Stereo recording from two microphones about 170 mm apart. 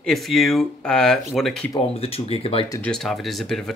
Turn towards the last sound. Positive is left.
turn(degrees=0)  # may be behind; listen again after turning